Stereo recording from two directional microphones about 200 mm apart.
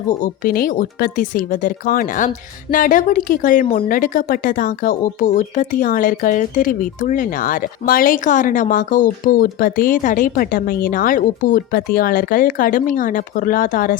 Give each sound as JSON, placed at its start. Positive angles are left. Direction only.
{"t": 0.1, "sound": "a woman's voice", "side_deg": 45}